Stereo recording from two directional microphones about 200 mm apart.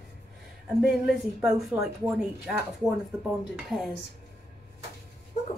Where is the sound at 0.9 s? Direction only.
Centre (ahead or behind).